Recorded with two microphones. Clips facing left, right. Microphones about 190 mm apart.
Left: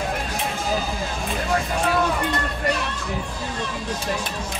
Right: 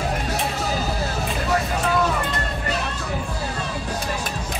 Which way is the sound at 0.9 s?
40° right (ahead or behind).